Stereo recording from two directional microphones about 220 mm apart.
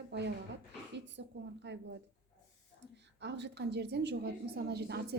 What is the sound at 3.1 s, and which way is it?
A woman's voice, 50° right (ahead or behind).